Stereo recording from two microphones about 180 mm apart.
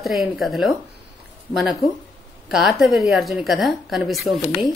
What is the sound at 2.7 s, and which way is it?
A woman's voice, centre (ahead or behind).